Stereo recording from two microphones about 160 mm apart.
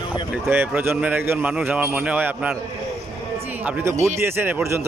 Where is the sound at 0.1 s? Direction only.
10° right (ahead or behind).